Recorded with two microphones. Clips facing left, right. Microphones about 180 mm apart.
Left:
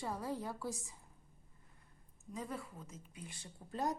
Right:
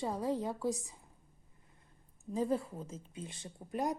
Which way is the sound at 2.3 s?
30° right (ahead or behind).